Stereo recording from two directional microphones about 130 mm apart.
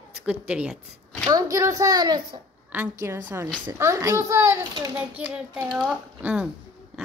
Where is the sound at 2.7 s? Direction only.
15° right (ahead or behind).